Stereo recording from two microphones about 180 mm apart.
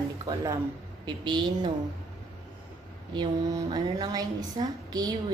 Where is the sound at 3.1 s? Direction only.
25° right (ahead or behind).